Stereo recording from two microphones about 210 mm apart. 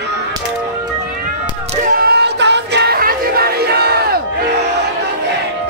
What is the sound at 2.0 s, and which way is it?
Music, 50° right (ahead or behind).